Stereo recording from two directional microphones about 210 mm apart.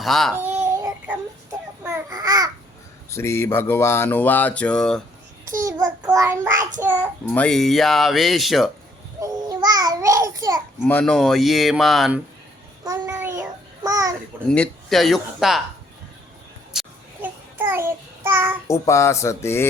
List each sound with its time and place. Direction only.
0.0 s speech: centre (ahead or behind)
0.3 s a sound: 10° right (ahead or behind)
0.8 s music: 10° right (ahead or behind)
1.8 s babbling: 15° right (ahead or behind)
3.1 s speech: 10° left (ahead or behind)
5.5 s child singing: 15° right (ahead or behind)
7.3 s speech: 5° left (ahead or behind)
9.2 s babbling: 20° right (ahead or behind)
10.8 s speech: 5° left (ahead or behind)
12.8 s child singing: 15° right (ahead or behind)
14.5 s speech: 5° left (ahead or behind)
16.7 s child singing: 10° right (ahead or behind)
18.7 s speech: 15° left (ahead or behind)